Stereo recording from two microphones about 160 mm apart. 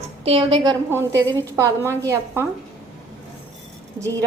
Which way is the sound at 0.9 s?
15° right (ahead or behind).